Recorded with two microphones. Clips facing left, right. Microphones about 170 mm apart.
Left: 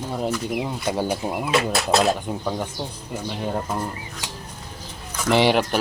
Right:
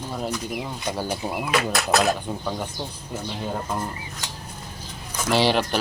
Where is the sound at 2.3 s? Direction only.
5° left (ahead or behind).